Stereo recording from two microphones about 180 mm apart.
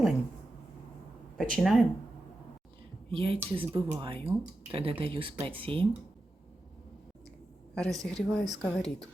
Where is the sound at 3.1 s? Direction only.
30° right (ahead or behind).